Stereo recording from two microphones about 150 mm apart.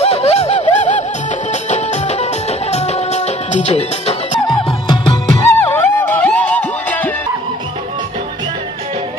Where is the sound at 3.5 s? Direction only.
45° left (ahead or behind).